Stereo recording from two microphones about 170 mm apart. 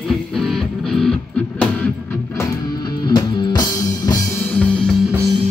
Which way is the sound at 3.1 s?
25° left (ahead or behind).